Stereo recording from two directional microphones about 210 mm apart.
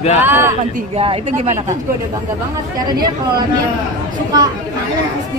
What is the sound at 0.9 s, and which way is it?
Speech, 25° right (ahead or behind).